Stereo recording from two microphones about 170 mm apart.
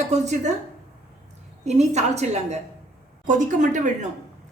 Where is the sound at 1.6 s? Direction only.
40° right (ahead or behind).